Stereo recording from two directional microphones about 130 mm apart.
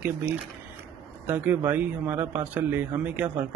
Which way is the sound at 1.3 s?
15° right (ahead or behind).